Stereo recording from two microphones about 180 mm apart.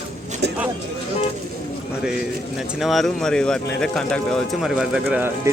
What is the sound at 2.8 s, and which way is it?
Speech, centre (ahead or behind).